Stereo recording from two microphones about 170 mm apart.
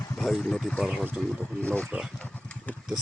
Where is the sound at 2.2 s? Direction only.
10° left (ahead or behind).